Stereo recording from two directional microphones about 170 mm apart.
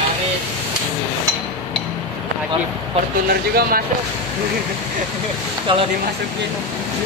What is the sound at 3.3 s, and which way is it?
Speech, 60° right (ahead or behind).